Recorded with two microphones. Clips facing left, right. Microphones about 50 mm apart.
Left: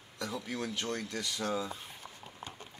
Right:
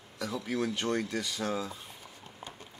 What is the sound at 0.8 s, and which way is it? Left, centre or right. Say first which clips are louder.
Speech: right 5 dB; centre.